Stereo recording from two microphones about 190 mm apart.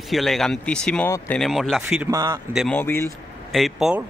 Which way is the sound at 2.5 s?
5° left (ahead or behind).